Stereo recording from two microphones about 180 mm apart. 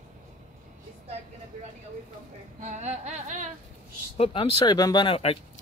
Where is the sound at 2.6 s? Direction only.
40° right (ahead or behind).